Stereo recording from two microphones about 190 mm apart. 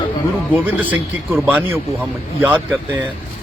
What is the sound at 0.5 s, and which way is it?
A man's voice, 10° right (ahead or behind).